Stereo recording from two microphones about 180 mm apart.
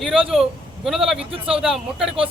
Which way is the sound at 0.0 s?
Centre (ahead or behind).